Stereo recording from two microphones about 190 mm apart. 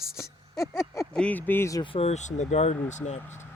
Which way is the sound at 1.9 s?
35° left (ahead or behind).